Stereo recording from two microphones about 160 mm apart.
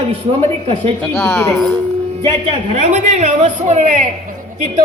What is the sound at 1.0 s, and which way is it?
Speech, 15° left (ahead or behind).